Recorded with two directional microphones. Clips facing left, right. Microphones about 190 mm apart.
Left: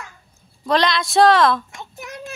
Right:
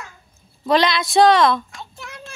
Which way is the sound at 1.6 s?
20° left (ahead or behind).